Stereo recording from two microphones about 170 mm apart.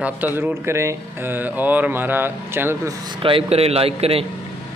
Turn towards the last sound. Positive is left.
turn(degrees=-35)  # may be behind; listen again after turning